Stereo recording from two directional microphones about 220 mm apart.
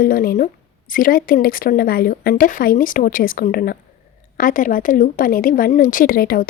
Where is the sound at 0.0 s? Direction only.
40° left (ahead or behind).